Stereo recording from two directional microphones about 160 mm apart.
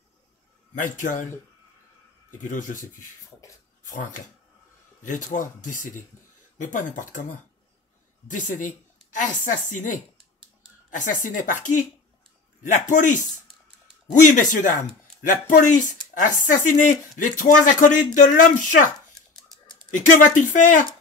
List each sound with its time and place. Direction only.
0.7 s a man's voice: 55° left (ahead or behind)
2.3 s a man's voice: 55° left (ahead or behind)
14.2 s a man's voice: 55° left (ahead or behind)
19.9 s speech: 55° left (ahead or behind)